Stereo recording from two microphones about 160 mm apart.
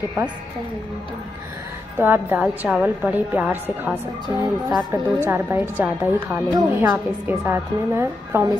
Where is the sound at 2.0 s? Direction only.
15° right (ahead or behind).